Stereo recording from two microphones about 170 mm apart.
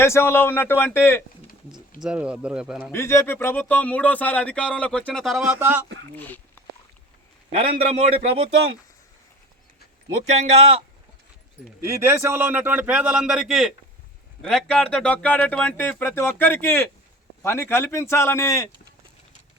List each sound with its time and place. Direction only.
0.0 s speech: 15° left (ahead or behind)
2.0 s speech: 5° right (ahead or behind)
2.9 s speech: 15° left (ahead or behind); by 5.8 s 10° right (ahead or behind)
6.1 s speech: 10° left (ahead or behind)
7.9 s speech: 40° right (ahead or behind)
10.2 s speech: 40° right (ahead or behind)
11.9 s a man's voice: 15° right (ahead or behind); by 18.7 s 15° left (ahead or behind)